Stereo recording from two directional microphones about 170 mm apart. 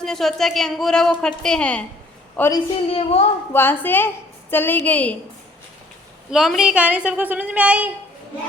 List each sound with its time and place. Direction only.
0.0 s a woman's voice: centre (ahead or behind)
2.8 s a woman's voice: 35° left (ahead or behind)
3.5 s a woman's voice: 10° left (ahead or behind)
6.3 s a woman's voice: 5° right (ahead or behind)